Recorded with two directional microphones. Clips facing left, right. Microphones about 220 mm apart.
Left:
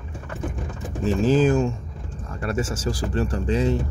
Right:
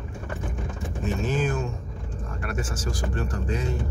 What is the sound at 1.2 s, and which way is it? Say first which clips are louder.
Speech: left 10 dB; 30° left (ahead or behind).